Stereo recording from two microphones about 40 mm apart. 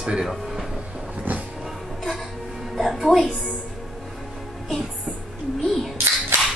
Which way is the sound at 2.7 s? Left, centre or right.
Centre.